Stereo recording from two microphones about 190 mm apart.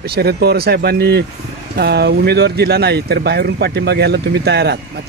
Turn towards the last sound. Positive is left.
turn(degrees=-60)  # may be behind; listen again after turning